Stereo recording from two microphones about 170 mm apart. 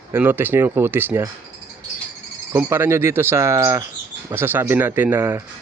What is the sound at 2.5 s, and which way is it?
Speech, 15° right (ahead or behind).